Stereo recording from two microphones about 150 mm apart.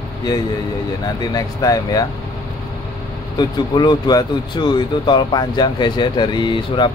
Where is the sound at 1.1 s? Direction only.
25° left (ahead or behind).